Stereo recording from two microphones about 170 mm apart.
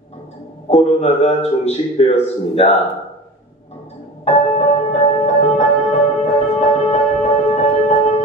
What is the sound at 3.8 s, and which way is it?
Music, 40° left (ahead or behind).